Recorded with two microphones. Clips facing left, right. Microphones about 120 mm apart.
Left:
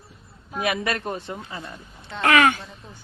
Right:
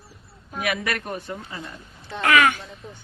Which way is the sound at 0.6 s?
25° left (ahead or behind).